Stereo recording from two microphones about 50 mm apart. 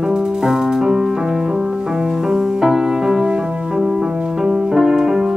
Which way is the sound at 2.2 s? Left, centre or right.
Centre.